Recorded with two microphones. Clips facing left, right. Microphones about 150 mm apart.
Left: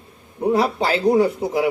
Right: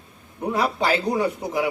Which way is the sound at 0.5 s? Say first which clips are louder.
Left 2 dB; 30° left (ahead or behind).